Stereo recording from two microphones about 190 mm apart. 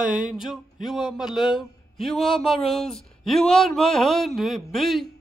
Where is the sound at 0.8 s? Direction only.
Centre (ahead or behind).